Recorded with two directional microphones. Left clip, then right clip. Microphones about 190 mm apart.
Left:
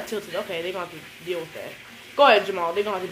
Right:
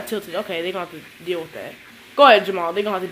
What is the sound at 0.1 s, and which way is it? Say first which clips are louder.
Speech: right 4 dB; 55° right (ahead or behind).